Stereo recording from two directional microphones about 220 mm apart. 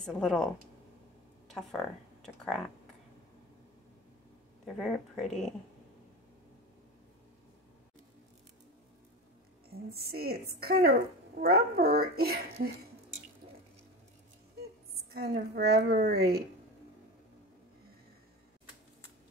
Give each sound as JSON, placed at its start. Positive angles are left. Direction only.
{"t": 0.0, "sound": "speech", "side_deg": 5}
{"t": 1.5, "sound": "speech", "side_deg": 0}
{"t": 4.7, "sound": "speech", "side_deg": 0}
{"t": 9.7, "sound": "a woman's voice", "side_deg": -45}
{"t": 15.1, "sound": "a woman's voice", "side_deg": -45}